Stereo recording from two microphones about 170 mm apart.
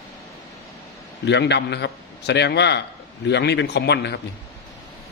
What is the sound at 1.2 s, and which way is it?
A man's voice, 90° left.